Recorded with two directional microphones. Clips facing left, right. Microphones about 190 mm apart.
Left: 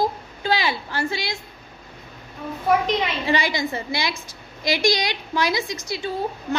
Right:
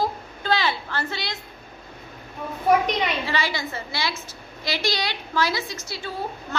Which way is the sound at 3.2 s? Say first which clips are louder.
Left 4 dB; 15° left (ahead or behind).